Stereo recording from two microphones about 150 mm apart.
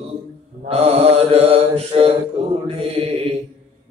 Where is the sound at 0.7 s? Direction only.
40° right (ahead or behind).